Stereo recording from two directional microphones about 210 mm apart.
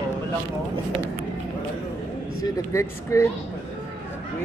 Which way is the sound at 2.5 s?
15° left (ahead or behind).